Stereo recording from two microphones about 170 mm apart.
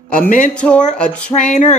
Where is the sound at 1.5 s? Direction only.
45° left (ahead or behind).